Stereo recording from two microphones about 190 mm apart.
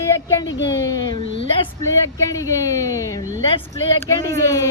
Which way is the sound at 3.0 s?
15° left (ahead or behind).